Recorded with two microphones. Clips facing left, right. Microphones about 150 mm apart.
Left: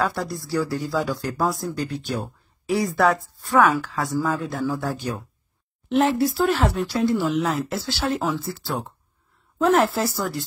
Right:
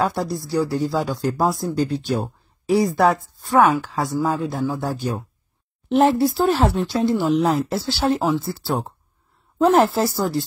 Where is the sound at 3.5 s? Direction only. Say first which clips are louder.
Right 2 dB; 20° right (ahead or behind).